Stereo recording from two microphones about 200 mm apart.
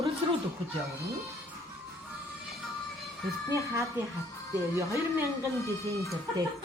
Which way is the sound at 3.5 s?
15° right (ahead or behind).